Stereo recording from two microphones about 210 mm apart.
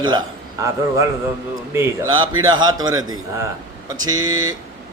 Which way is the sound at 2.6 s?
20° right (ahead or behind).